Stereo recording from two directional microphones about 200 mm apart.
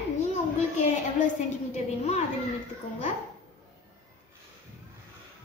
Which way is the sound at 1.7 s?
35° left (ahead or behind).